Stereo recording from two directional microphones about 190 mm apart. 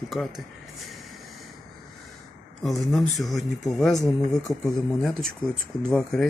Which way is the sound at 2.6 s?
Centre (ahead or behind).